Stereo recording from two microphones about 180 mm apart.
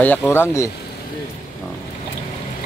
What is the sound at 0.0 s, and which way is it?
Speech, 10° left (ahead or behind).